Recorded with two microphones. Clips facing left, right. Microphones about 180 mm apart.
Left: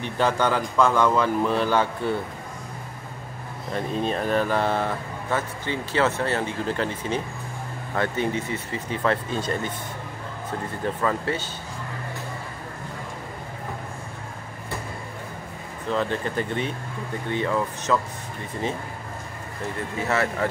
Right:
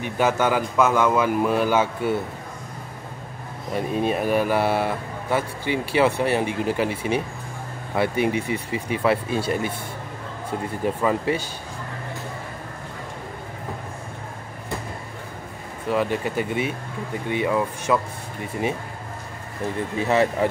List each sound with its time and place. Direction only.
0.0 s speech: 10° right (ahead or behind)
3.7 s speech: 10° right (ahead or behind)
10.8 s speech: 15° right (ahead or behind)
15.9 s speech: 10° right (ahead or behind)
20.0 s speech: 15° right (ahead or behind)